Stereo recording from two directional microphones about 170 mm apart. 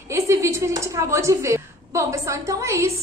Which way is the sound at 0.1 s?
15° right (ahead or behind).